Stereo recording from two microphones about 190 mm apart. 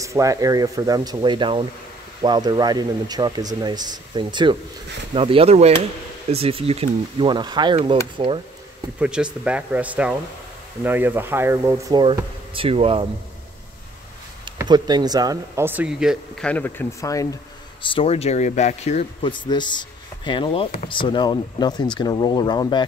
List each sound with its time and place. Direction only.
0.0 s speech: 15° right (ahead or behind)
9.0 s speech: 5° right (ahead or behind); by 13.0 s 30° right (ahead or behind)
14.4 s speech: 20° right (ahead or behind); by 17.4 s 15° left (ahead or behind)
17.8 s speech: 30° left (ahead or behind)